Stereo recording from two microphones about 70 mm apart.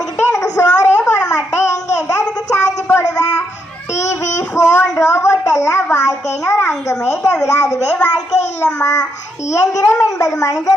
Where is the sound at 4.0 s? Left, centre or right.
Left.